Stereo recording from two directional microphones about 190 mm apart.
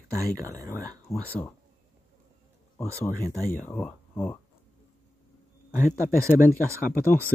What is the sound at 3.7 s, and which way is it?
Speech, 5° left (ahead or behind).